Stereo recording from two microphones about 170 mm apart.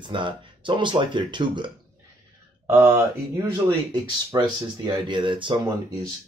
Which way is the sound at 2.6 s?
15° right (ahead or behind).